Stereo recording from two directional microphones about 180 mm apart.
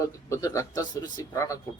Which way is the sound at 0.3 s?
15° left (ahead or behind).